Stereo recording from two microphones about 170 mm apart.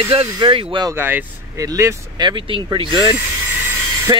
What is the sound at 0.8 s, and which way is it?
Speech, 10° right (ahead or behind).